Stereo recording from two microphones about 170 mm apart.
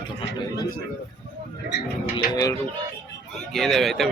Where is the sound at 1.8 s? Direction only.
65° left (ahead or behind).